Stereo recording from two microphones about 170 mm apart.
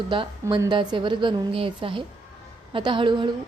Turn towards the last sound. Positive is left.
turn(degrees=-30)  # may be behind; listen again after turning